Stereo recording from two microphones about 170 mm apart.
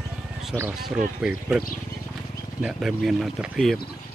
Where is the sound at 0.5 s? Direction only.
10° right (ahead or behind).